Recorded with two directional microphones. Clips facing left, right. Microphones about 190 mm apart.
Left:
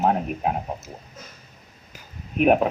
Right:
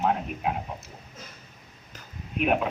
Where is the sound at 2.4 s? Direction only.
40° left (ahead or behind).